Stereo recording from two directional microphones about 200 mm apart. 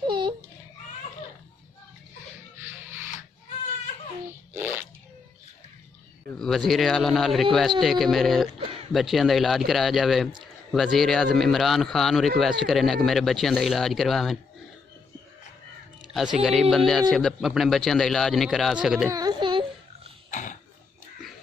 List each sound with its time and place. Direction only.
0.0 s baby cry: 25° right (ahead or behind)
4.3 s fart: 10° right (ahead or behind)
6.2 s speech: 5° left (ahead or behind)
16.3 s speech: centre (ahead or behind)
19.0 s a sound: 20° right (ahead or behind)
20.2 s a sound: 40° left (ahead or behind)